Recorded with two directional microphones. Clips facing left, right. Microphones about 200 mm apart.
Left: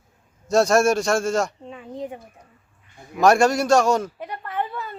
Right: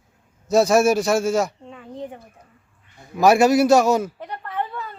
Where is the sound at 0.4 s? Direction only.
Centre (ahead or behind).